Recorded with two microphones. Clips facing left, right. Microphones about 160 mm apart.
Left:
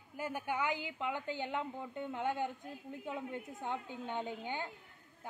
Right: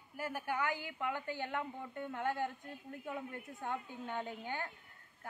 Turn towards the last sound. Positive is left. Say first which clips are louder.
# left 2 dB
turn(degrees=20)  # may be behind; listen again after turning